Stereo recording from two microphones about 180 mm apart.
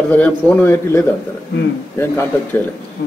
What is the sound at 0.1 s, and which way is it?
Speech, 10° left (ahead or behind).